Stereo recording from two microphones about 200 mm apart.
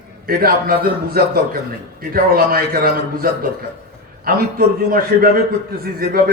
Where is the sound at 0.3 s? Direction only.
45° right (ahead or behind).